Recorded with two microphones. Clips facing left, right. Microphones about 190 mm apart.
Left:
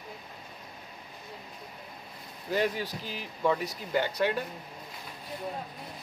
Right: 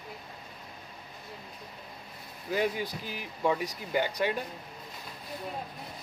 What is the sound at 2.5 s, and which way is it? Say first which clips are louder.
Speech: left 1 dB; 15° right (ahead or behind).